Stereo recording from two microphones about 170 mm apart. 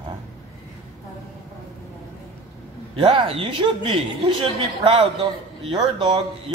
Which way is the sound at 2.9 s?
35° right (ahead or behind).